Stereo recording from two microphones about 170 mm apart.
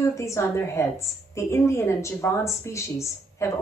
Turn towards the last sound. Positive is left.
turn(degrees=15)  # may be behind; listen again after turning